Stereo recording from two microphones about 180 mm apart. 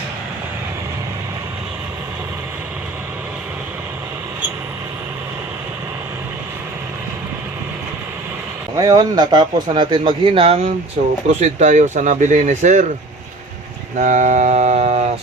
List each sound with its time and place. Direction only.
8.8 s a man's voice: 20° right (ahead or behind); by 12.8 s 40° right (ahead or behind)
14.0 s speech: 40° right (ahead or behind)